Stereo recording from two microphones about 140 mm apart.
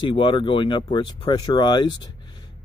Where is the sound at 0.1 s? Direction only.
35° left (ahead or behind).